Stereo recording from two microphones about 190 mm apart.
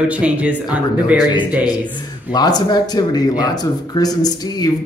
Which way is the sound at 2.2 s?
20° left (ahead or behind).